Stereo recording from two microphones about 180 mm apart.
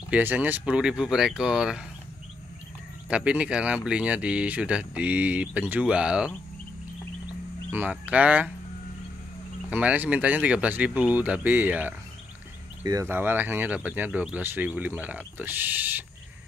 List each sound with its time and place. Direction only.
0.1 s speech: 10° right (ahead or behind)
3.1 s speech: 5° right (ahead or behind)
7.7 s speech: 10° right (ahead or behind)
9.7 s speech: 10° right (ahead or behind)